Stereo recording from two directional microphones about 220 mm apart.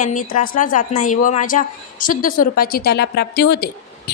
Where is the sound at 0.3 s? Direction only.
35° left (ahead or behind).